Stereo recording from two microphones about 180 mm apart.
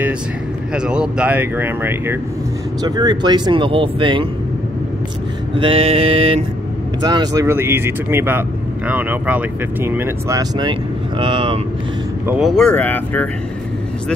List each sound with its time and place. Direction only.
0.7 s speech: 5° right (ahead or behind)
2.8 s speech: 20° right (ahead or behind)
5.6 s mantra: 30° right (ahead or behind)
7.0 s speech: 20° right (ahead or behind)
12.3 s speech: centre (ahead or behind)